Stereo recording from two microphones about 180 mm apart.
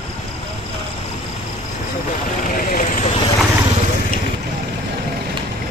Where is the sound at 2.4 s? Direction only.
50° left (ahead or behind).